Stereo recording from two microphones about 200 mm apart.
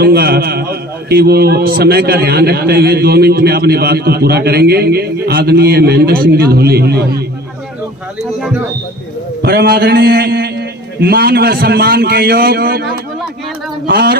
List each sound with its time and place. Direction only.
0.0 s a man's voice: 50° right (ahead or behind)
8.2 s speech: centre (ahead or behind)
9.4 s a man's voice: 50° right (ahead or behind)
13.8 s a man's voice: 50° right (ahead or behind)